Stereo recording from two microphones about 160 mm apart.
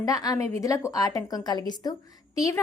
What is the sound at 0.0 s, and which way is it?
A woman's voice, 20° left (ahead or behind).